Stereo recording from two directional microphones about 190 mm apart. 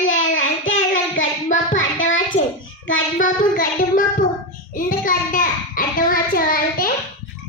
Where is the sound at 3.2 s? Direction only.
45° left (ahead or behind).